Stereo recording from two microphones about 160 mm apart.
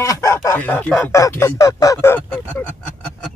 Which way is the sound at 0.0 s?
20° left (ahead or behind).